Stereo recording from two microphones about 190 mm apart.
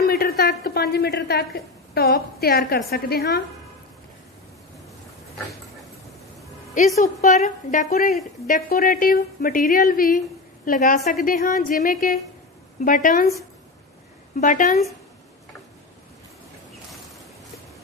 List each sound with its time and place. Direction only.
0.1 s a woman's voice: 55° left (ahead or behind)
7.0 s a woman's voice: 40° left (ahead or behind)
14.3 s a woman's voice: 45° left (ahead or behind)